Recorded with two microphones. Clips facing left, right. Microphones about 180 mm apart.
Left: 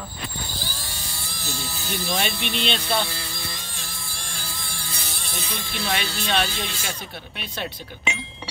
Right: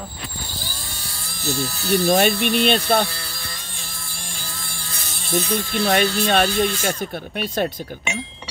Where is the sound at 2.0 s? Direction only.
50° right (ahead or behind).